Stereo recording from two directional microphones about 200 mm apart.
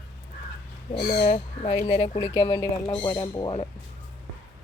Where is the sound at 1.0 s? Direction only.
25° left (ahead or behind).